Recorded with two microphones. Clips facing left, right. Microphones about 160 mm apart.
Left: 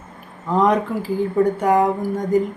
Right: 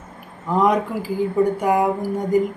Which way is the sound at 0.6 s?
10° right (ahead or behind).